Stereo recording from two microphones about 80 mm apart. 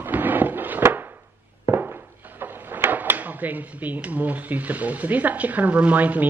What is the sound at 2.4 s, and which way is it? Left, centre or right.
Speech, right.